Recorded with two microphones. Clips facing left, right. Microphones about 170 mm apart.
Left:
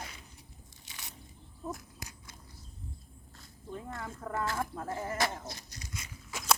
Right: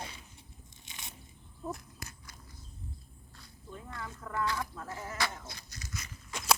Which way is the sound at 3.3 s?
45° left (ahead or behind).